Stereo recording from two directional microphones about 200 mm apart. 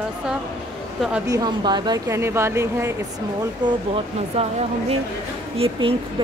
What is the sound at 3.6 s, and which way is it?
Speech, 30° right (ahead or behind).